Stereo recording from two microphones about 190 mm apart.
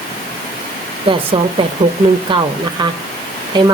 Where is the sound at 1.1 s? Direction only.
25° right (ahead or behind).